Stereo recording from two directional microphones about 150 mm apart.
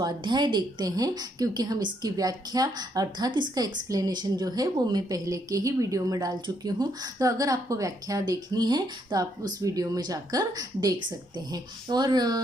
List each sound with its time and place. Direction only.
0.0 s a woman's voice: 30° right (ahead or behind)